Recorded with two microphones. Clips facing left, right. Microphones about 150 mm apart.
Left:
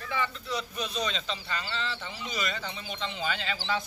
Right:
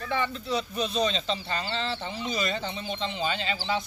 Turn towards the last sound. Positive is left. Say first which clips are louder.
# right 3 dB
turn(degrees=-20)  # may be behind; listen again after turning